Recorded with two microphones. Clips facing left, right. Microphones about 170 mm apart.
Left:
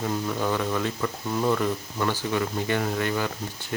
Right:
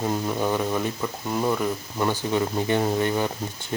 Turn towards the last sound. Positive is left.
turn(degrees=-20)  # may be behind; listen again after turning